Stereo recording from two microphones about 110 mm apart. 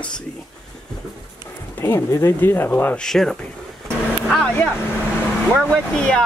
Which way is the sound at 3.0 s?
5° left (ahead or behind).